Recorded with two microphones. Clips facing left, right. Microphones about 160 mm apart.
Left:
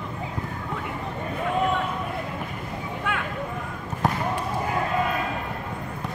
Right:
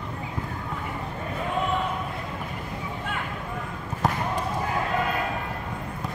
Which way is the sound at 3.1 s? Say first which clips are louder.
Left 5 dB; 75° left (ahead or behind).